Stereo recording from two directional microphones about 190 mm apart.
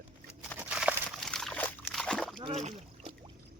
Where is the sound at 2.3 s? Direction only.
25° right (ahead or behind).